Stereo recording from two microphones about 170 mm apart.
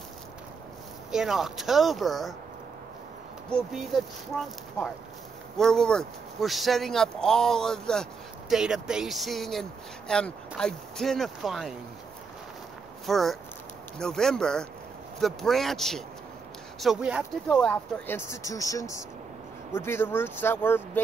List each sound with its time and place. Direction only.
1.1 s speech: centre (ahead or behind)
3.4 s speech: 5° left (ahead or behind)
13.0 s speech: centre (ahead or behind)
17.6 s speech: 10° left (ahead or behind)